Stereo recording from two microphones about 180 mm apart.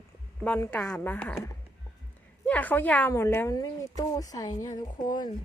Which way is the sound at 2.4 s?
10° left (ahead or behind).